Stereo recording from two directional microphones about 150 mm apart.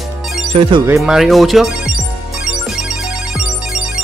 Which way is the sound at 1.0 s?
Centre (ahead or behind).